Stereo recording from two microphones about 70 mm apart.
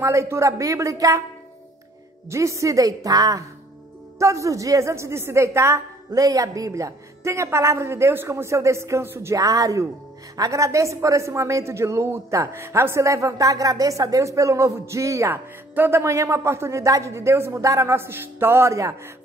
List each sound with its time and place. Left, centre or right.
0.0 s speech: right
2.2 s speech: right
4.2 s speech: right
6.2 s speech: right
9.3 s a woman's voice: right
15.3 s speech: right
16.0 s speech: right
17.9 s speech: right
18.7 s speech: right